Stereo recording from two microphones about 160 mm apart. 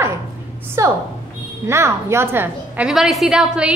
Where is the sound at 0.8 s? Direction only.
20° right (ahead or behind).